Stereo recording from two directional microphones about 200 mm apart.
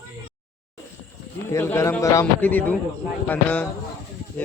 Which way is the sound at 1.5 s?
15° left (ahead or behind).